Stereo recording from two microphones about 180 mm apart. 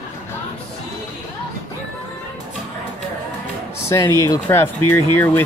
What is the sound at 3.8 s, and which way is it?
Speech, 15° left (ahead or behind).